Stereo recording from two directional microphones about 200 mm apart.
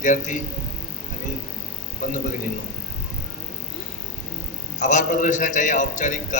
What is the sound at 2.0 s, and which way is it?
Speech, 40° left (ahead or behind).